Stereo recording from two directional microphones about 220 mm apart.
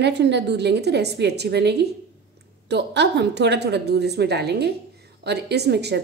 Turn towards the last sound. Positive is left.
turn(degrees=-50)  # may be behind; listen again after turning